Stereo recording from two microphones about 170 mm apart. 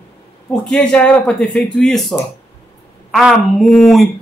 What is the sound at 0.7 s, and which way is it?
A man's voice, 5° left (ahead or behind).